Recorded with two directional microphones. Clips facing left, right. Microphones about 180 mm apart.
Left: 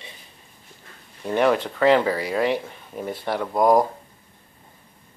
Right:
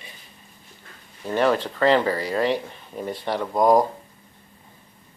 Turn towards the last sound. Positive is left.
turn(degrees=10)  # may be behind; listen again after turning